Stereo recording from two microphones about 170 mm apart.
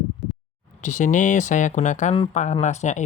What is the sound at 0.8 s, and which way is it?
Speech, 45° left (ahead or behind).